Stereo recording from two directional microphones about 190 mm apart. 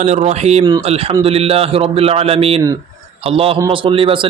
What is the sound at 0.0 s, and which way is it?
A man's voice, 35° right (ahead or behind).